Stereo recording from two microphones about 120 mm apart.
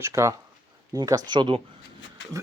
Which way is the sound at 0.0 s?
25° right (ahead or behind).